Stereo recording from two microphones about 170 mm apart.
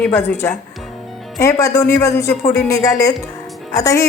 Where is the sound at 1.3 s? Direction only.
20° left (ahead or behind).